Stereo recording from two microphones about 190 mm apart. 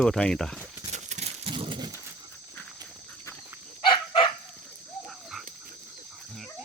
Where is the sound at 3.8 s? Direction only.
25° left (ahead or behind).